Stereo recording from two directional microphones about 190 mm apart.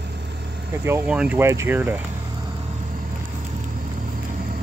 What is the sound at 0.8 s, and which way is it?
Speech, 10° right (ahead or behind).